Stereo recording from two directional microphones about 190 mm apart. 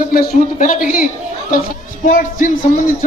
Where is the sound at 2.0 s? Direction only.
40° left (ahead or behind).